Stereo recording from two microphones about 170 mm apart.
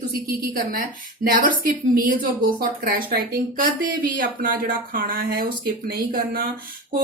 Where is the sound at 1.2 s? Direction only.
55° right (ahead or behind).